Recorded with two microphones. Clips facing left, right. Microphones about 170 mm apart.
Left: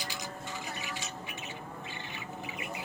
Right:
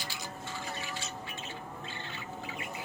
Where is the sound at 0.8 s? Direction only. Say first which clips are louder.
Even; 15° left (ahead or behind).